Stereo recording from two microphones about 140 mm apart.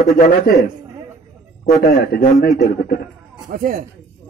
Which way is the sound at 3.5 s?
90° right.